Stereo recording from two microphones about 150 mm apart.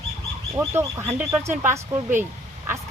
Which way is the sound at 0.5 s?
15° right (ahead or behind).